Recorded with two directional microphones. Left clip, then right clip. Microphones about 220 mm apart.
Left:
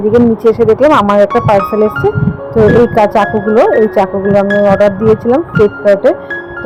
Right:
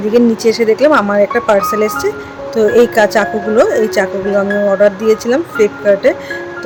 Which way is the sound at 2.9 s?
5° right (ahead or behind).